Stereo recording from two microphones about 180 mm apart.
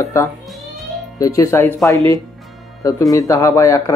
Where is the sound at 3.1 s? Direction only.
15° left (ahead or behind).